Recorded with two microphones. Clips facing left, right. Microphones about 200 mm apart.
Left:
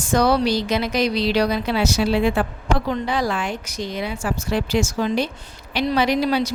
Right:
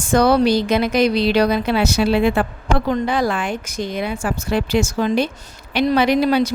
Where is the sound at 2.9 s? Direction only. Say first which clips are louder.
Right 4 dB; 50° right (ahead or behind).